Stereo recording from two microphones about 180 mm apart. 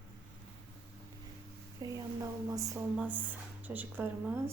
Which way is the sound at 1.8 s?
20° right (ahead or behind).